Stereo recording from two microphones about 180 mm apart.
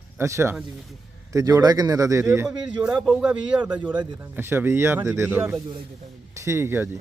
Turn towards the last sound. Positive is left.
turn(degrees=-10)  # may be behind; listen again after turning